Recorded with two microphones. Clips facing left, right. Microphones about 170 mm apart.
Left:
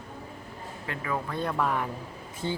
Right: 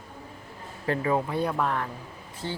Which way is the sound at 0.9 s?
30° right (ahead or behind).